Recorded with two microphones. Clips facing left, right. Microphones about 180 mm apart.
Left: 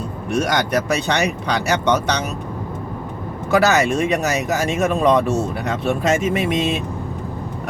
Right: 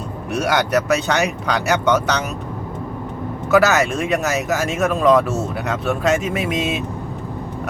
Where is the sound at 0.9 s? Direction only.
Centre (ahead or behind).